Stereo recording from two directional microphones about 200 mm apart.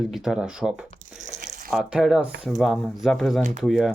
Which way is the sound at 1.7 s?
5° right (ahead or behind).